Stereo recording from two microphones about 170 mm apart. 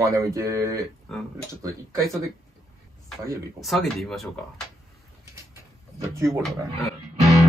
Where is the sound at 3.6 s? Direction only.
Centre (ahead or behind).